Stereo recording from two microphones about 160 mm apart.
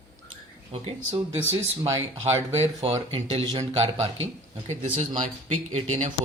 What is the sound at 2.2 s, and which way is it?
Speech, 45° right (ahead or behind).